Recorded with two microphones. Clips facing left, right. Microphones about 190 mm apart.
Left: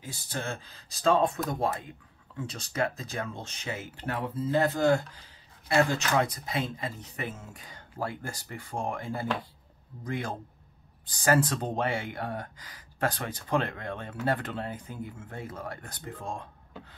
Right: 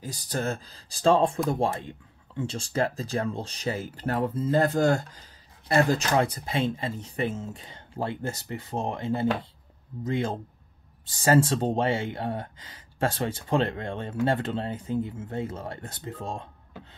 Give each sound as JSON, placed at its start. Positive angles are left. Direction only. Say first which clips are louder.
{"t": 0.0, "sound": "speech", "louder": "right 6 dB", "side_deg": -40}